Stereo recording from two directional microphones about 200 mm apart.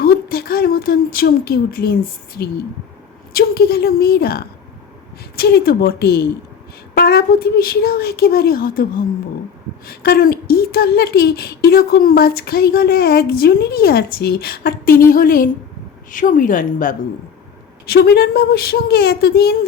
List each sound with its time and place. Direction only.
0.0 s a woman's voice: 50° left (ahead or behind)